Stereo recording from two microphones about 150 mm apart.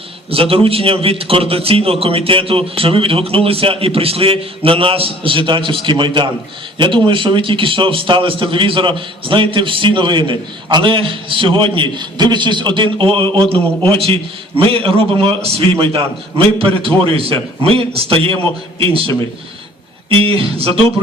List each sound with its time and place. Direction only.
0.3 s a man's voice: 40° right (ahead or behind)